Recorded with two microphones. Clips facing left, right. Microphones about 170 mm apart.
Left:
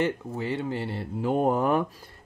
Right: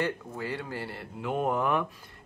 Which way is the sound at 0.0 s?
20° left (ahead or behind).